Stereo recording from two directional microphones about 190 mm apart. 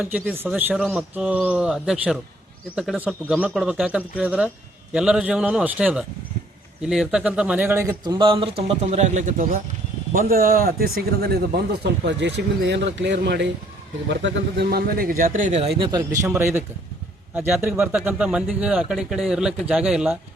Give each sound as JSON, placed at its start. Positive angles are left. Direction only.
{"t": 0.0, "sound": "a man's voice", "side_deg": -10}
{"t": 15.8, "sound": "a man's voice", "side_deg": -20}